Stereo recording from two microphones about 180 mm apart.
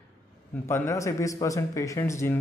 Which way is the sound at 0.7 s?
15° left (ahead or behind).